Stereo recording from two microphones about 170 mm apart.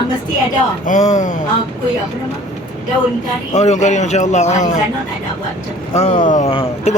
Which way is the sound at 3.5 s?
45° left (ahead or behind).